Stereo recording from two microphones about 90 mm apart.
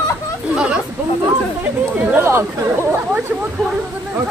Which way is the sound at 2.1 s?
30° right (ahead or behind).